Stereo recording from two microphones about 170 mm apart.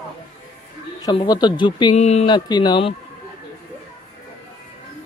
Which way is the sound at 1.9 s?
40° left (ahead or behind).